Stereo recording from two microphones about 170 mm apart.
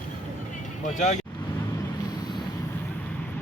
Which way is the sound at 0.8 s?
45° left (ahead or behind).